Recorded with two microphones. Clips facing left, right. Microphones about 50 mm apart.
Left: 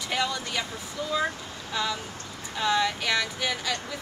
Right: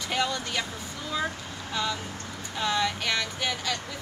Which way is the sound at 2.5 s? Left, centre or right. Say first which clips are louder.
Left 2 dB; centre.